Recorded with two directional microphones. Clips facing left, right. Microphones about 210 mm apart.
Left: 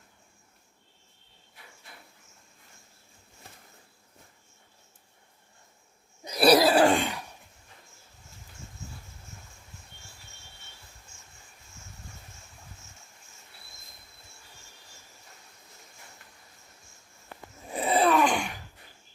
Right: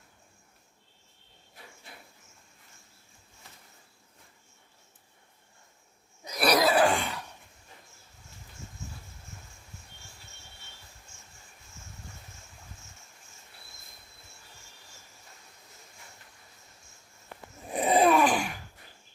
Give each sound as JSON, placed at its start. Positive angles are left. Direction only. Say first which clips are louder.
{"t": 6.2, "sound": "cough", "louder": "left 5 dB", "side_deg": 30}
{"t": 17.7, "sound": "groan", "louder": "right 1 dB", "side_deg": -15}